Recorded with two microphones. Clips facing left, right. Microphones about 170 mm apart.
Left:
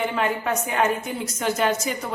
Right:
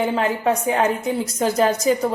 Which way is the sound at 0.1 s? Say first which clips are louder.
Right 4 dB; 35° right (ahead or behind).